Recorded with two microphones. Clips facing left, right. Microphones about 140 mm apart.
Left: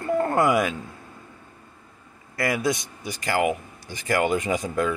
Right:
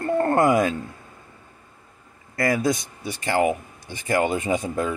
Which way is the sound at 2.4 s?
40° right (ahead or behind).